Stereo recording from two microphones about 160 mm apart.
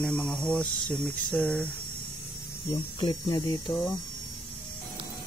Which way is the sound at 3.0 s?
25° left (ahead or behind).